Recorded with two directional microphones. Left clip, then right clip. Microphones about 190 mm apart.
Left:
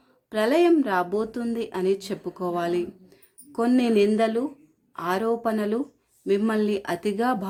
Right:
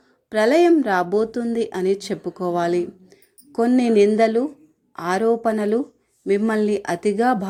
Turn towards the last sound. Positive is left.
turn(degrees=-15)  # may be behind; listen again after turning